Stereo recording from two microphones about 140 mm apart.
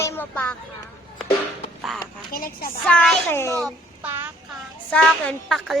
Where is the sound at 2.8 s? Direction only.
5° left (ahead or behind).